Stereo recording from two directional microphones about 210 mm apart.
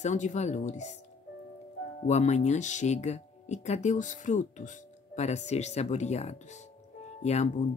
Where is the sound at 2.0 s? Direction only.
35° left (ahead or behind).